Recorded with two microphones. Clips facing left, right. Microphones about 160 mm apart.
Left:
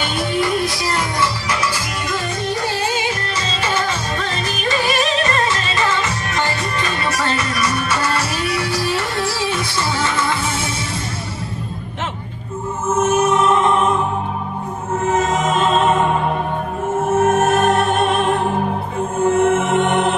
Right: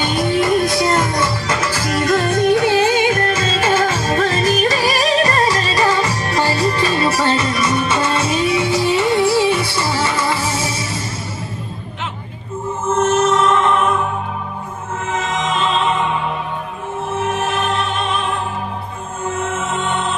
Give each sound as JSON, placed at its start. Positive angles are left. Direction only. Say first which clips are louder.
{"t": 0.0, "sound": "music", "louder": "right 3 dB", "side_deg": -20}
{"t": 1.5, "sound": "music", "louder": "right 3 dB", "side_deg": -50}
{"t": 12.9, "sound": "music", "louder": "right 1 dB", "side_deg": 10}
{"t": 15.0, "sound": "music", "louder": "left 4 dB", "side_deg": 45}